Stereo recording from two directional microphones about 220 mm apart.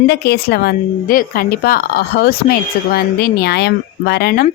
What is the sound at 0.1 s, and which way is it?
Speech, 45° left (ahead or behind).